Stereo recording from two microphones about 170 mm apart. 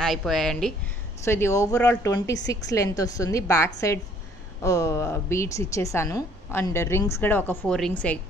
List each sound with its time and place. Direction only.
0.0 s a woman's voice: centre (ahead or behind)
1.2 s a woman's voice: 15° left (ahead or behind)